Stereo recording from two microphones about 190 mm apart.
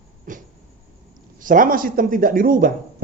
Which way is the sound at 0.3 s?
45° right (ahead or behind).